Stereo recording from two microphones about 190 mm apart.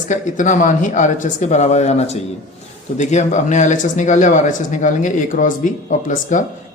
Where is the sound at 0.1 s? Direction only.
40° left (ahead or behind).